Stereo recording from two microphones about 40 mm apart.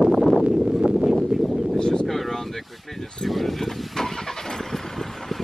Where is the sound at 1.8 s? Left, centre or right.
Left.